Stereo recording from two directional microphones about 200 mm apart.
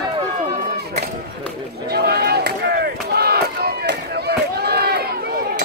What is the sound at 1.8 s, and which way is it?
Chop, 50° right (ahead or behind).